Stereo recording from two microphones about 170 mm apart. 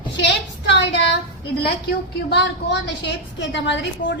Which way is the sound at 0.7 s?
90° left.